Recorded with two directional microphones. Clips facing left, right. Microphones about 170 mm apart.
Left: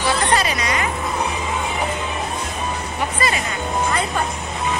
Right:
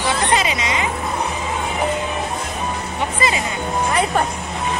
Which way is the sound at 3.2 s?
20° right (ahead or behind).